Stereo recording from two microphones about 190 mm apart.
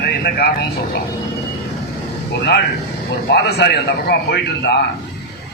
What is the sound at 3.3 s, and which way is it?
A man's voice, 60° left (ahead or behind).